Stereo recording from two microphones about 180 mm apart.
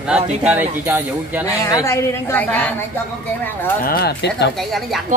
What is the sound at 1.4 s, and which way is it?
A woman's voice, 15° left (ahead or behind).